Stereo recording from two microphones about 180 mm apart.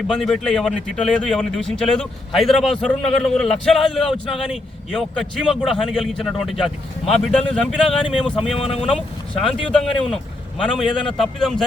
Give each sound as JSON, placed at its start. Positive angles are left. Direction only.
{"t": 0.1, "sound": "a man's voice", "side_deg": 0}
{"t": 8.5, "sound": "speech", "side_deg": 35}
{"t": 8.9, "sound": "a man's voice", "side_deg": 5}